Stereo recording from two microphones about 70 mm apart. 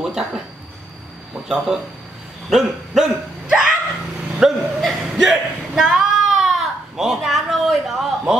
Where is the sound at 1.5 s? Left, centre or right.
Centre.